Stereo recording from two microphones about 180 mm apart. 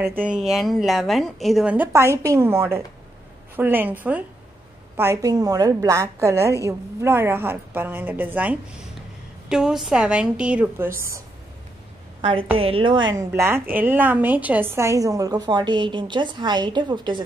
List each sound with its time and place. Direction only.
0.0 s a woman's voice: 10° right (ahead or behind)
12.2 s a woman's voice: 30° right (ahead or behind)
13.3 s a woman's voice: 10° right (ahead or behind)